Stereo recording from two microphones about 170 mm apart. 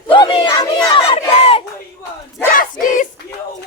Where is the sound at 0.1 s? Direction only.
30° left (ahead or behind).